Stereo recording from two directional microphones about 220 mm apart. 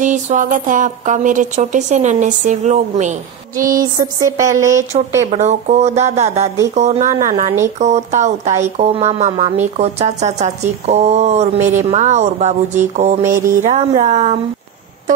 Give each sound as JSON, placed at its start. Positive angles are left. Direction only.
{"t": 0.0, "sound": "speech", "side_deg": -35}
{"t": 3.8, "sound": "speech", "side_deg": -15}
{"t": 5.2, "sound": "speech", "side_deg": -30}